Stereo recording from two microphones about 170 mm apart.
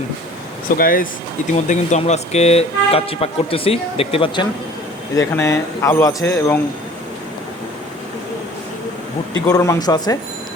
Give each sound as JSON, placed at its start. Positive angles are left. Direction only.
{"t": 0.8, "sound": "speech", "side_deg": 55}
{"t": 1.5, "sound": "speech", "side_deg": 45}
{"t": 5.1, "sound": "speech", "side_deg": 20}
{"t": 9.5, "sound": "speech", "side_deg": 20}